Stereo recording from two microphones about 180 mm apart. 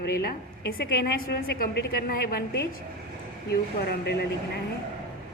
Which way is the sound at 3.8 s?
65° left (ahead or behind).